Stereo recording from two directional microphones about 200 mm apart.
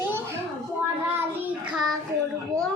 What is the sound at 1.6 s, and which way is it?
Speech, centre (ahead or behind).